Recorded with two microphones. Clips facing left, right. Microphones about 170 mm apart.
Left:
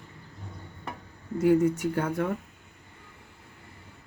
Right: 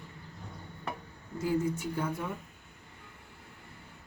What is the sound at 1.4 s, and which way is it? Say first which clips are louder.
Speech: left 8 dB; 70° left (ahead or behind).